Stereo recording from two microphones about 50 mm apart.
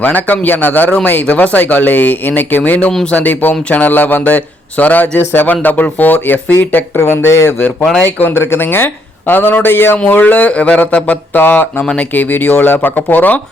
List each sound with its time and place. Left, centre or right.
0.0 s speech: left
7.0 s speech: left
8.0 s speech: left
10.2 s speech: left
11.3 s speech: left